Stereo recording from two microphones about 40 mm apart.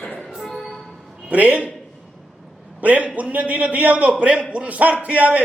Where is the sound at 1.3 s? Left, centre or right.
Right.